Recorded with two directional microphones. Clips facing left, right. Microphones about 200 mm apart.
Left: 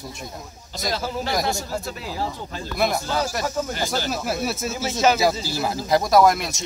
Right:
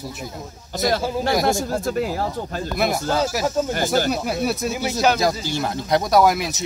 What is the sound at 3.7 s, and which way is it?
Speech, 50° right (ahead or behind).